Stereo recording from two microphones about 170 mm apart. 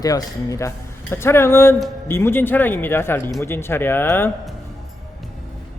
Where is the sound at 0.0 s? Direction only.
20° left (ahead or behind).